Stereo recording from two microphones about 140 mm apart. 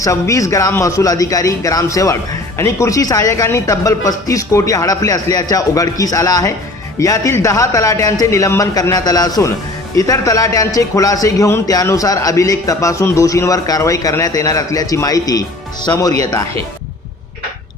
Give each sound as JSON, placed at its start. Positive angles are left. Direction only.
{"t": 0.0, "sound": "a man's voice", "side_deg": 25}